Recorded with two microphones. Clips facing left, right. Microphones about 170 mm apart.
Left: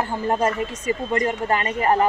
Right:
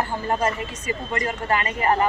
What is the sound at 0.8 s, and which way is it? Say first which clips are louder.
Speech: left 4 dB; 40° left (ahead or behind).